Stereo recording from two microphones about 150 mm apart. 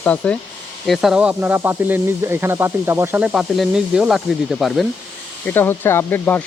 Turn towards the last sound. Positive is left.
turn(degrees=15)  # may be behind; listen again after turning